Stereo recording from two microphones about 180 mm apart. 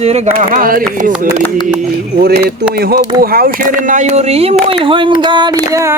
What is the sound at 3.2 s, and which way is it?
Speech, 55° right (ahead or behind).